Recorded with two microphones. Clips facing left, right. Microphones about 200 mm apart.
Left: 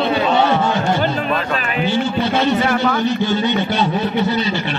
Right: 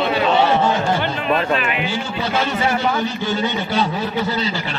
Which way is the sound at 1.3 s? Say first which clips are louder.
Right 2 dB; 30° right (ahead or behind).